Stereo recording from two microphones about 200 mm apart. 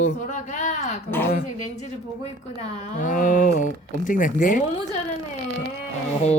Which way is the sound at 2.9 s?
40° left (ahead or behind).